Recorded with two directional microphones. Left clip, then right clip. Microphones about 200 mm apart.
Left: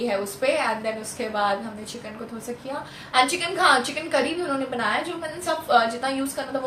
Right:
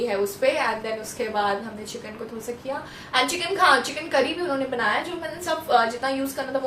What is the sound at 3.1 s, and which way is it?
Speech, 10° right (ahead or behind).